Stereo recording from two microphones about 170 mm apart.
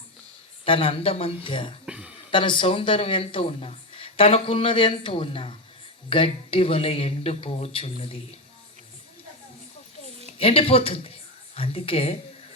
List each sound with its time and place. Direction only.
0.6 s speech: 30° left (ahead or behind)
1.9 s a sound: 5° right (ahead or behind)
2.3 s speech: 30° left (ahead or behind)
10.3 s a woman's voice: 35° left (ahead or behind)